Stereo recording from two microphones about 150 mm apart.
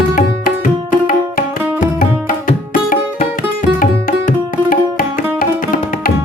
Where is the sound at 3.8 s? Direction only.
65° left (ahead or behind).